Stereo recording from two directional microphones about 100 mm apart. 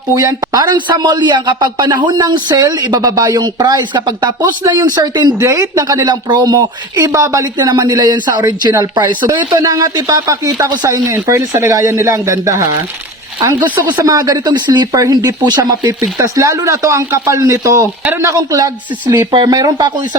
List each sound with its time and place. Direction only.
0.1 s speech: 35° right (ahead or behind)
5.4 s speech: 30° right (ahead or behind)
14.0 s speech: 35° right (ahead or behind)